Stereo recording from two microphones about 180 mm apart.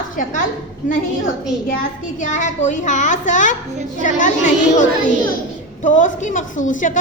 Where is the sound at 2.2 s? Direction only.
45° left (ahead or behind).